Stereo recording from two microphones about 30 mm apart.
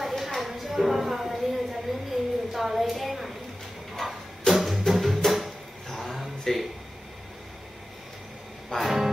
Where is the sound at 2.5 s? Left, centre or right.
Centre.